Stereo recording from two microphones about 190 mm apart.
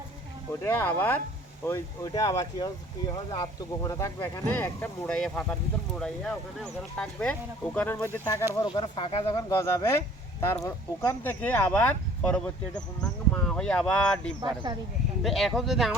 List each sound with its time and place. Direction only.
0.6 s speech: 10° left (ahead or behind)
8.6 s speech: 25° left (ahead or behind); by 14.3 s 5° left (ahead or behind)
14.4 s speech: 25° right (ahead or behind)
15.2 s speech: centre (ahead or behind)